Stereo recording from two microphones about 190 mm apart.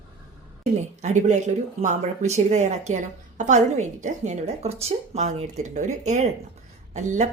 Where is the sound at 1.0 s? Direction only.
40° right (ahead or behind).